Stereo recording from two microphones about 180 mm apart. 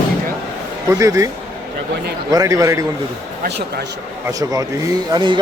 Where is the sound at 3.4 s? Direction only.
65° right (ahead or behind).